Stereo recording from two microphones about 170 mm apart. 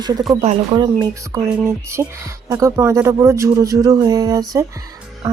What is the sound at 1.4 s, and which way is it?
Speech, 10° right (ahead or behind).